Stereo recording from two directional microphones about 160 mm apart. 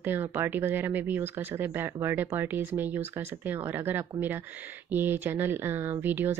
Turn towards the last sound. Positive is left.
turn(degrees=-10)  # may be behind; listen again after turning